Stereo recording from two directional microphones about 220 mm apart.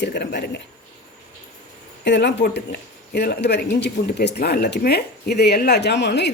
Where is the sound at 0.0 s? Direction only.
50° left (ahead or behind).